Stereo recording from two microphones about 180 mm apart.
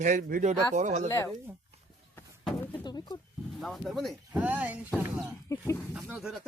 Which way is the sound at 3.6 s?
Centre (ahead or behind).